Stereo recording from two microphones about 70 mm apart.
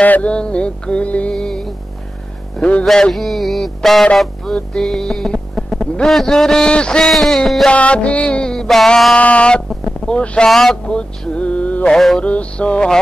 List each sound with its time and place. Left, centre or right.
0.0 s music: left
2.5 s speech: centre
2.8 s music: centre
7.7 s music: centre
9.2 s music: centre
10.5 s music: centre
10.9 s speech: centre
12.2 s music: centre